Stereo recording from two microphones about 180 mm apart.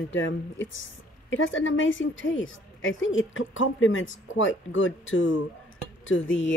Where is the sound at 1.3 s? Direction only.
90° left.